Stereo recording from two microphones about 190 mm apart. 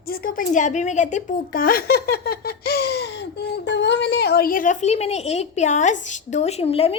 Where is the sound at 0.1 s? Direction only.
50° left (ahead or behind).